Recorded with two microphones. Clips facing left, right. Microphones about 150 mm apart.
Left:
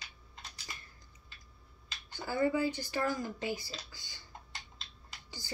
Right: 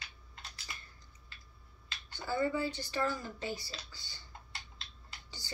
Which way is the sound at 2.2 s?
10° left (ahead or behind).